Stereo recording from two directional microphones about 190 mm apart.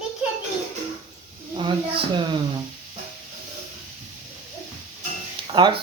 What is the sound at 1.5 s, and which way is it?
Speech, 25° right (ahead or behind).